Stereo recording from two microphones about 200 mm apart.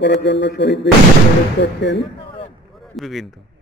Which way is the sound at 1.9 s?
25° left (ahead or behind).